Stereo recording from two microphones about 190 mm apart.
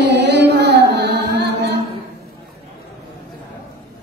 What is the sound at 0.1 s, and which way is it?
Music, 65° right (ahead or behind).